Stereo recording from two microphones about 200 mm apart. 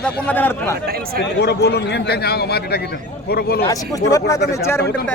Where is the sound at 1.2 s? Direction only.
60° left (ahead or behind).